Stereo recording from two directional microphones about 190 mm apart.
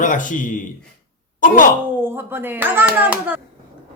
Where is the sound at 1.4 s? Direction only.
45° left (ahead or behind).